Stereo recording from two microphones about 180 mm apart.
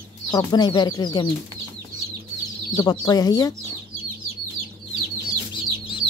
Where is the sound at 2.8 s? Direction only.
20° left (ahead or behind).